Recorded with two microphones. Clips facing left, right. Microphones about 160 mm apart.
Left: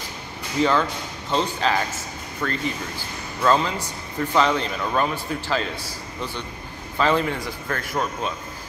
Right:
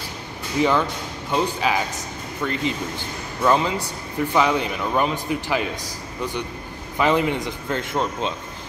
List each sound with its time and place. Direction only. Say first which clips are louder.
0.6 s speech: right 1 dB; 15° right (ahead or behind)